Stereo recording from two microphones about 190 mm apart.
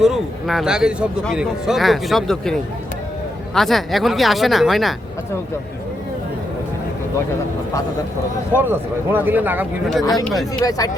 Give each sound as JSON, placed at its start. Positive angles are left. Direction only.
{"t": 0.0, "sound": "speech", "side_deg": 0}
{"t": 8.5, "sound": "speech", "side_deg": -10}
{"t": 10.0, "sound": "speech", "side_deg": 20}